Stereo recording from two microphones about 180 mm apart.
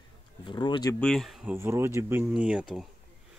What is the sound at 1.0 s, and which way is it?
Speech, centre (ahead or behind).